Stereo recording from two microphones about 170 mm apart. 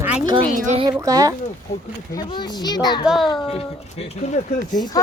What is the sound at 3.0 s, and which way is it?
Speech, centre (ahead or behind).